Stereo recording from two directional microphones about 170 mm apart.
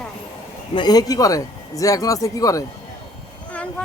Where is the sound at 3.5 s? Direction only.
5° left (ahead or behind).